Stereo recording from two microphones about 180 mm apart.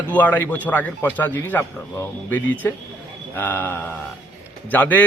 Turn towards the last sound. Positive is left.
turn(degrees=10)  # may be behind; listen again after turning